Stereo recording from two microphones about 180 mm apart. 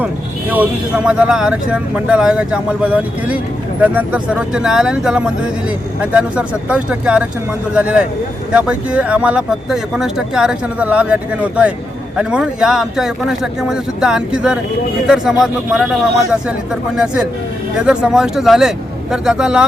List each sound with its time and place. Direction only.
0.5 s speech: 5° right (ahead or behind)